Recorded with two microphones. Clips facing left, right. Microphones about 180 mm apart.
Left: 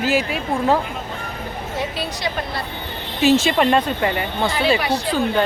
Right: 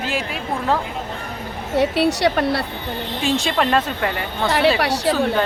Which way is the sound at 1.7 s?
70° right (ahead or behind).